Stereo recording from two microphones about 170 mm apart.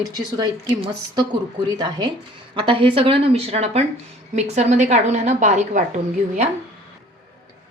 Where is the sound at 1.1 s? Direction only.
25° right (ahead or behind); by 5.8 s 45° right (ahead or behind).